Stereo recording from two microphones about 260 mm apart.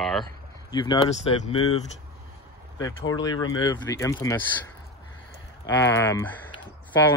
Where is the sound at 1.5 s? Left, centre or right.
Left.